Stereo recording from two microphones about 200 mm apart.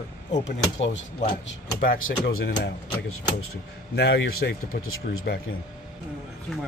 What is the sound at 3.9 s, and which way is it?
Speech, 55° left (ahead or behind).